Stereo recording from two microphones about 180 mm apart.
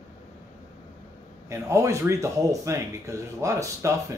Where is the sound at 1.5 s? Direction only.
15° right (ahead or behind).